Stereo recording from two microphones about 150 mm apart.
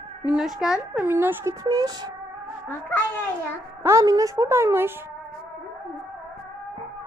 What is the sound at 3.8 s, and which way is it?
A woman's voice, 20° right (ahead or behind).